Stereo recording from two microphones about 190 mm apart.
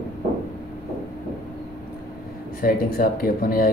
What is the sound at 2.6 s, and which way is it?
Speech, 50° left (ahead or behind).